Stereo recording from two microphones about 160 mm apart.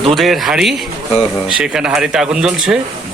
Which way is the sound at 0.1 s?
Centre (ahead or behind).